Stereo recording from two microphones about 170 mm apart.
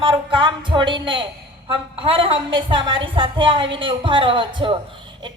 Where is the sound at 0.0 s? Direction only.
30° right (ahead or behind).